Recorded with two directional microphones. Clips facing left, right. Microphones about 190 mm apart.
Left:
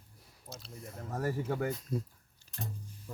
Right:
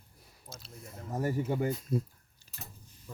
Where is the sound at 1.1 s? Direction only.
20° right (ahead or behind).